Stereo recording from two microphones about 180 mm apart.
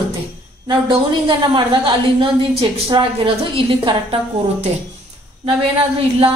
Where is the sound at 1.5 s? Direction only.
25° right (ahead or behind).